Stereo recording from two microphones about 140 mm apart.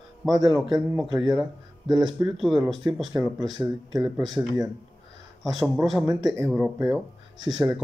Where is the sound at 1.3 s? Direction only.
Centre (ahead or behind).